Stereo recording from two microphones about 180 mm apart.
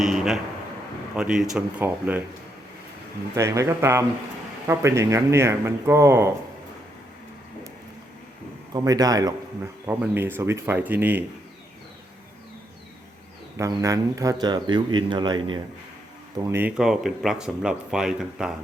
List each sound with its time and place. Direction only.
0.0 s speech: centre (ahead or behind)
3.3 s speech: 15° right (ahead or behind)
8.7 s speech: 20° right (ahead or behind)
13.6 s speech: 20° right (ahead or behind)
16.3 s speech: 15° right (ahead or behind)